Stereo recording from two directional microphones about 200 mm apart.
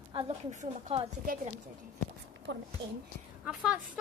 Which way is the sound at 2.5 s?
65° right (ahead or behind).